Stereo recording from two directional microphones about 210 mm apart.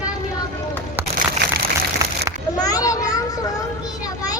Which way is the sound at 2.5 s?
20° left (ahead or behind).